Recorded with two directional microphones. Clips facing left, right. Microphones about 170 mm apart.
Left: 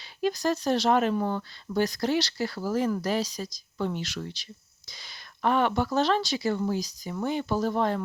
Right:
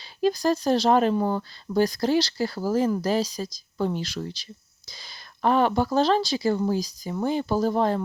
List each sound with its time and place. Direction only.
0.2 s speech: 35° right (ahead or behind)